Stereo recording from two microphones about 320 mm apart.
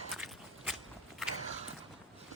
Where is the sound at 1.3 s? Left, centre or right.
Right.